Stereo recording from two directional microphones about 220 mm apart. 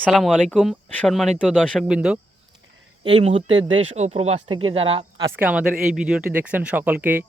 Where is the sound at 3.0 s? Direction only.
25° right (ahead or behind).